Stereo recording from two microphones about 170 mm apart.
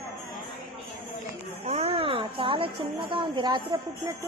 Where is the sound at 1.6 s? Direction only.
35° right (ahead or behind).